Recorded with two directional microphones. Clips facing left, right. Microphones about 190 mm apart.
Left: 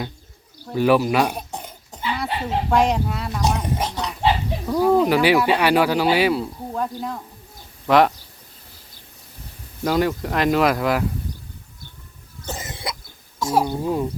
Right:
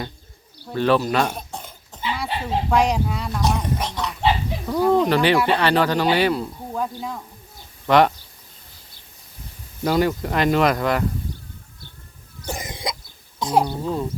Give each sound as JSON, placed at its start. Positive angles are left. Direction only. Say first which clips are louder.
{"t": 0.6, "sound": "speech", "louder": "left 2 dB", "side_deg": 10}
{"t": 2.1, "sound": "speech", "louder": "left 1 dB", "side_deg": 0}
{"t": 9.8, "sound": "speech", "louder": "even", "side_deg": 0}
{"t": 12.5, "sound": "cough", "louder": "right 2 dB", "side_deg": -15}
{"t": 13.4, "sound": "speech", "louder": "right 1 dB", "side_deg": -20}
{"t": 13.7, "sound": "speech", "louder": "left 2 dB", "side_deg": 15}